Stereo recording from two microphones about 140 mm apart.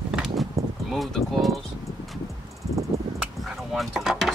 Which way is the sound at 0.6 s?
25° right (ahead or behind).